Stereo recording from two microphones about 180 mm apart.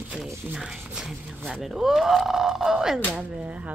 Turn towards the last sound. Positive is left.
turn(degrees=-5)  # may be behind; listen again after turning